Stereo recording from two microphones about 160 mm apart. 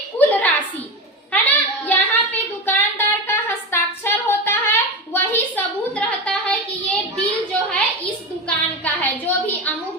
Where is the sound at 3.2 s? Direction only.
15° left (ahead or behind).